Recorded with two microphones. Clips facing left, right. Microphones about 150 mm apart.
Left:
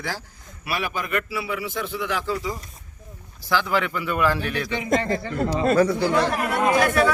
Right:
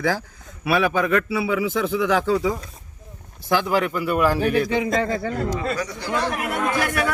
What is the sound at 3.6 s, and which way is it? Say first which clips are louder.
A man's voice: right 2 dB; 45° right (ahead or behind).